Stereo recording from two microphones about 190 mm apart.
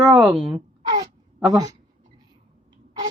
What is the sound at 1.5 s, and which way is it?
Speech, 20° right (ahead or behind).